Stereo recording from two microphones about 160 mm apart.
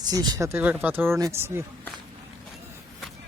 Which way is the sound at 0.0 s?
25° right (ahead or behind).